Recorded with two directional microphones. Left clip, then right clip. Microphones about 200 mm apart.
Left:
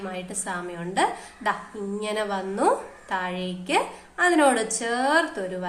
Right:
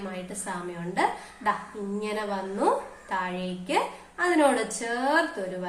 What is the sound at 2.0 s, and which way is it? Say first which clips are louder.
A woman's voice: left 3 dB; 40° left (ahead or behind).